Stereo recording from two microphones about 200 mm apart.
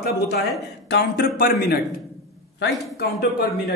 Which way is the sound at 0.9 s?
50° left (ahead or behind).